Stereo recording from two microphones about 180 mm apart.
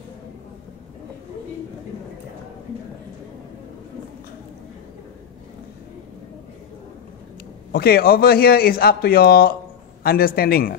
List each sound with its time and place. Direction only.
7.7 s a man's voice: 60° left (ahead or behind)